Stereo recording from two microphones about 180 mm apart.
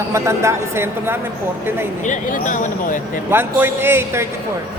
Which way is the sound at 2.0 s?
45° left (ahead or behind).